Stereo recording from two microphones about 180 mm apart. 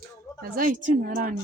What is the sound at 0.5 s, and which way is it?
Speech, 50° right (ahead or behind).